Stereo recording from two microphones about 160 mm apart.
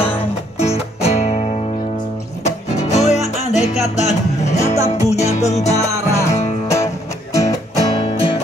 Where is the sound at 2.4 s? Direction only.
45° left (ahead or behind).